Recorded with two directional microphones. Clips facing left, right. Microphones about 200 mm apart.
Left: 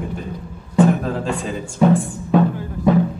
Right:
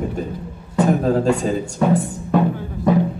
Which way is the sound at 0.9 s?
40° right (ahead or behind).